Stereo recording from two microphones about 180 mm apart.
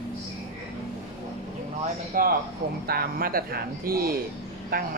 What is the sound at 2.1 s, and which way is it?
Speech, 50° right (ahead or behind).